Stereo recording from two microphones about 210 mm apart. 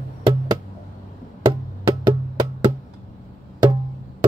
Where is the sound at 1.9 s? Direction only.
20° right (ahead or behind).